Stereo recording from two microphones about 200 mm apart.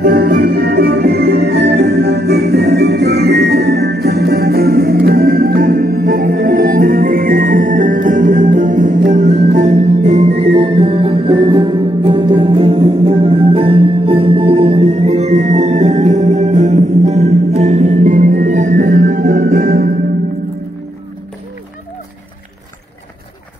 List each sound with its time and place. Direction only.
0.0 s music: 45° right (ahead or behind)